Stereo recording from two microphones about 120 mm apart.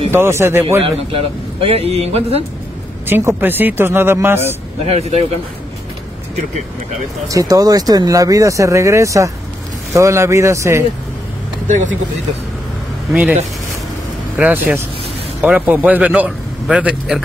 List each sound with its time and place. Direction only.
0.1 s speech: 20° right (ahead or behind)
0.8 s a man's voice: 50° right (ahead or behind)
3.1 s speech: 20° right (ahead or behind)
4.8 s a man's voice: 65° right (ahead or behind)
7.2 s speech: 30° right (ahead or behind)
13.1 s a man's voice: 10° right (ahead or behind)
14.4 s a man's voice: 5° right (ahead or behind)